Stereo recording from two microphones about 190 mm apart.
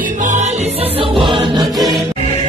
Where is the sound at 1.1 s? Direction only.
25° right (ahead or behind).